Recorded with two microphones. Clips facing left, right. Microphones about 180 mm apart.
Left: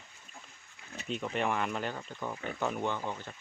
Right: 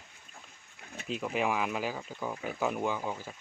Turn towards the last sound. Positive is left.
turn(degrees=-5)  # may be behind; listen again after turning